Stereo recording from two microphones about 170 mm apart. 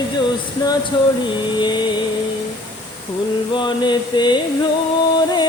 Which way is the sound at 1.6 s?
25° left (ahead or behind).